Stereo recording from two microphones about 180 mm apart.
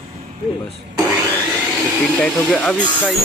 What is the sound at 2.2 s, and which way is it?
Speech, 5° left (ahead or behind).